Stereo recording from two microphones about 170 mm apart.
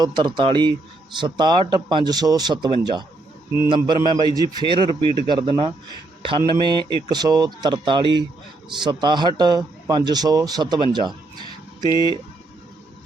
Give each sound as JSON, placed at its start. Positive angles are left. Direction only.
{"t": 0.0, "sound": "a man's voice", "side_deg": -25}
{"t": 10.9, "sound": "a sound", "side_deg": -25}
{"t": 11.9, "sound": "speech", "side_deg": 25}